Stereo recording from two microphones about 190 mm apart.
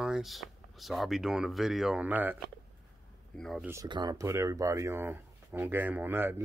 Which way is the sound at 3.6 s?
20° right (ahead or behind).